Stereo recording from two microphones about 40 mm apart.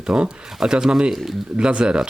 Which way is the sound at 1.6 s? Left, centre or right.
Right.